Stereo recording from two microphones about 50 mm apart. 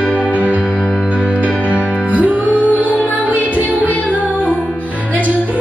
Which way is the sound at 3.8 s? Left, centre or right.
Left.